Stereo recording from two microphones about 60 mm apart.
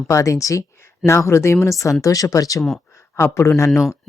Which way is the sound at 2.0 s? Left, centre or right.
Left.